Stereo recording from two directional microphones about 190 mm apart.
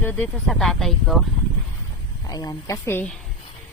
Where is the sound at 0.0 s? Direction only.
10° left (ahead or behind).